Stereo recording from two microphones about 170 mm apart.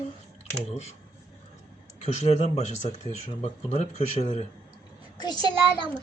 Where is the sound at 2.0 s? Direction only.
45° left (ahead or behind).